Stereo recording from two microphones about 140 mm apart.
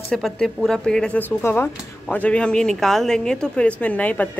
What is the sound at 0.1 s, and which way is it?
Speech, 5° left (ahead or behind).